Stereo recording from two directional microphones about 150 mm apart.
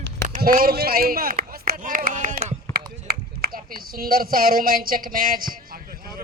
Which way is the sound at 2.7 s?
90° right.